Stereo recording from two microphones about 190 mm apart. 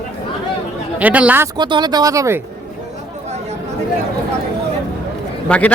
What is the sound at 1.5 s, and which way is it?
Speech, 20° right (ahead or behind).